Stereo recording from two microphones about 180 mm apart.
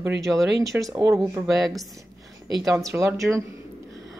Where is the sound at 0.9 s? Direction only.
20° right (ahead or behind).